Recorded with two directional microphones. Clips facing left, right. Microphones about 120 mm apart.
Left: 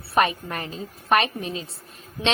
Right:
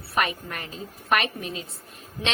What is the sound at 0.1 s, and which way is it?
A woman's voice, 30° left (ahead or behind).